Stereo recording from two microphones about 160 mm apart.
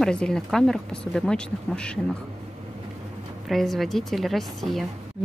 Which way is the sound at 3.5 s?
Centre (ahead or behind).